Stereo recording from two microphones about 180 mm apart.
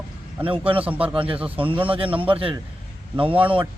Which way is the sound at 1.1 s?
30° right (ahead or behind).